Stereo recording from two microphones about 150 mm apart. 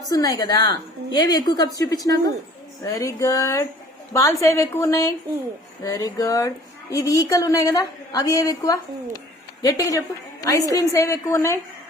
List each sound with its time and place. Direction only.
0.1 s a woman's voice: 25° left (ahead or behind)